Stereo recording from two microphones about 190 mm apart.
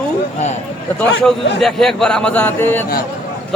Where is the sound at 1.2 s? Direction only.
5° left (ahead or behind).